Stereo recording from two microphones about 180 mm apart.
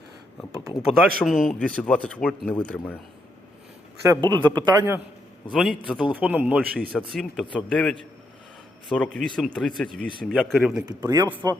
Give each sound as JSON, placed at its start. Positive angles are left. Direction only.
{"t": 0.9, "sound": "speech", "side_deg": 0}
{"t": 4.1, "sound": "a man's voice", "side_deg": -25}
{"t": 5.5, "sound": "a man's voice", "side_deg": -5}
{"t": 7.1, "sound": "speech", "side_deg": 5}
{"t": 10.8, "sound": "a man's voice", "side_deg": -20}